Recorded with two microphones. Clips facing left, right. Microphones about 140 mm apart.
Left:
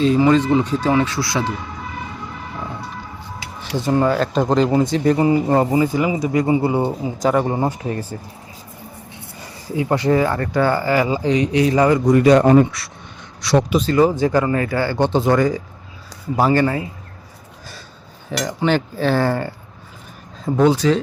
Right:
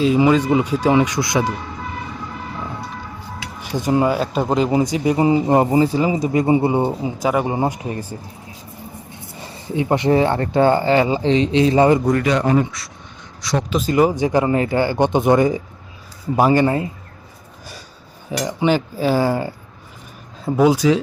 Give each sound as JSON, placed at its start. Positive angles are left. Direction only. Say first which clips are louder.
{"t": 0.0, "sound": "speech", "louder": "even", "side_deg": -10}
{"t": 3.8, "sound": "speech", "louder": "even", "side_deg": -15}
{"t": 5.7, "sound": "speech", "louder": "right 1 dB", "side_deg": -30}
{"t": 7.2, "sound": "speech", "louder": "left 2 dB", "side_deg": -10}
{"t": 9.4, "sound": "speech", "louder": "right 1 dB", "side_deg": -25}
{"t": 12.2, "sound": "speech", "louder": "left 6 dB", "side_deg": 45}
{"t": 13.9, "sound": "speech", "louder": "even", "side_deg": -15}
{"t": 18.3, "sound": "speech", "louder": "right 1 dB", "side_deg": -10}